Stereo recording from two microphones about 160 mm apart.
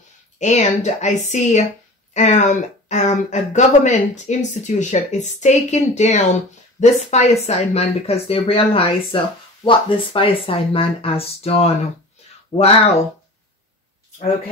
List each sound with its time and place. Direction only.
0.4 s speech: 45° left (ahead or behind)